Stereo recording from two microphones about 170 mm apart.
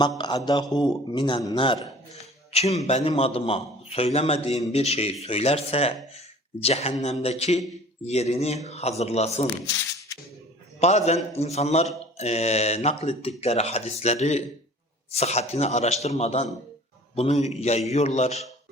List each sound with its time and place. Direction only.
0.2 s mantra: 25° left (ahead or behind)
1.1 s a man's voice: 25° left (ahead or behind)
10.8 s speech: 40° left (ahead or behind)